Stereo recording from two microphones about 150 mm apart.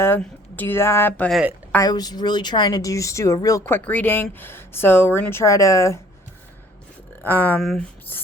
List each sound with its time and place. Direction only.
0.2 s a woman's voice: 10° left (ahead or behind)
1.3 s speech: 5° right (ahead or behind)
1.8 s speech: 25° left (ahead or behind)
7.2 s a woman's voice: 10° left (ahead or behind)
7.6 s speech: centre (ahead or behind)